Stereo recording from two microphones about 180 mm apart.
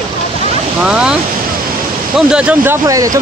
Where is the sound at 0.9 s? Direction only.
5° right (ahead or behind).